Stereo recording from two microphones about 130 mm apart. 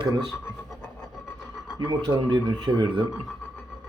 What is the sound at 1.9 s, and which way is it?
Speech, 35° right (ahead or behind).